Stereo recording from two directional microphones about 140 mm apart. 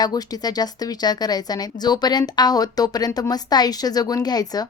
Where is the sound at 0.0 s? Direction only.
30° left (ahead or behind).